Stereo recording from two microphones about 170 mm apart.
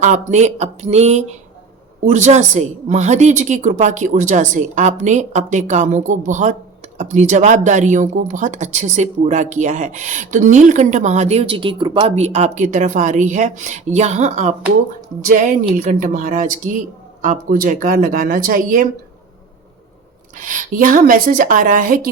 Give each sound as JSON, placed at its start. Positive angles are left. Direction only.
{"t": 0.0, "sound": "speech", "side_deg": -45}
{"t": 20.4, "sound": "speech", "side_deg": -50}